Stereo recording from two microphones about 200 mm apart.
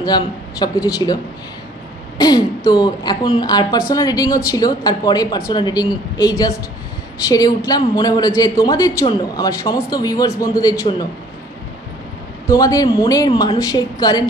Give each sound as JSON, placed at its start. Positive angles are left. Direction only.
{"t": 0.0, "sound": "a man's voice", "side_deg": 20}
{"t": 12.4, "sound": "speech", "side_deg": 15}